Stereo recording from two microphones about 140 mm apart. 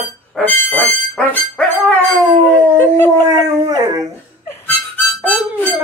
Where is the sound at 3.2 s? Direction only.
25° right (ahead or behind).